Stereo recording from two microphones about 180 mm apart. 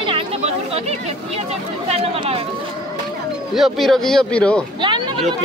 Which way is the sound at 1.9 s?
35° right (ahead or behind).